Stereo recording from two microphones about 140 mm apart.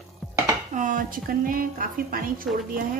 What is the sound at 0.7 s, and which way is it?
A woman's voice, 80° right.